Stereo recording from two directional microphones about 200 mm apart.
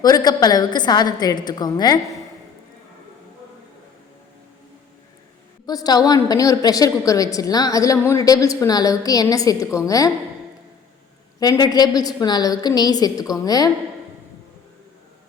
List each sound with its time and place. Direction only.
0.0 s a woman's voice: 20° left (ahead or behind)
5.6 s a woman's voice: 20° left (ahead or behind)
11.3 s a woman's voice: 20° left (ahead or behind)